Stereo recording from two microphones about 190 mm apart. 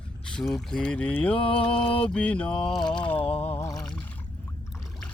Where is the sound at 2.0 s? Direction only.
5° left (ahead or behind).